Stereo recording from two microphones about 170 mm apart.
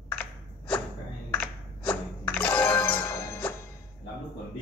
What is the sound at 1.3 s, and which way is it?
Music, 10° left (ahead or behind).